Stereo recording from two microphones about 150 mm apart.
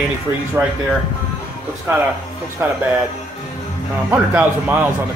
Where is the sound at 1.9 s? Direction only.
15° right (ahead or behind).